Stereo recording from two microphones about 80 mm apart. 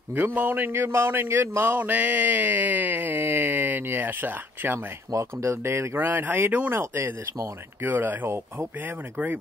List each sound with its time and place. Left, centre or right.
0.1 s speech: right
5.1 s speech: right